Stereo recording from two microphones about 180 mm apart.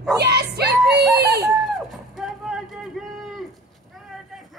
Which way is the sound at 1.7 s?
Centre (ahead or behind).